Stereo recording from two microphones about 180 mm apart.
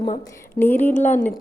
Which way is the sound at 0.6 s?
10° left (ahead or behind).